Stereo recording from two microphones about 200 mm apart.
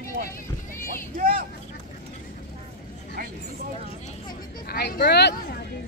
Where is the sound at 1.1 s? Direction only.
45° right (ahead or behind).